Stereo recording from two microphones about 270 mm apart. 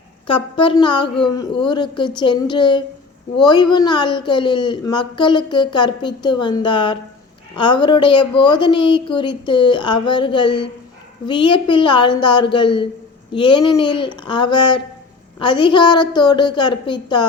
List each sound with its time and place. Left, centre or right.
0.3 s a woman's voice: centre